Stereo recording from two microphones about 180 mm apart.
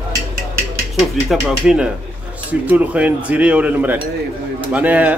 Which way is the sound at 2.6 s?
10° right (ahead or behind).